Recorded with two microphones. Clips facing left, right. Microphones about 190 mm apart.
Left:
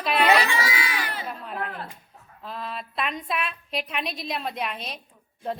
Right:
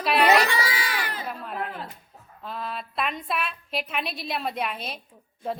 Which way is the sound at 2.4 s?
Centre (ahead or behind).